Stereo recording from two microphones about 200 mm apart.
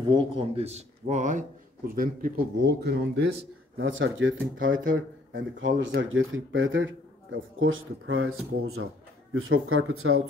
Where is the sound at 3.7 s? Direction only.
75° right (ahead or behind).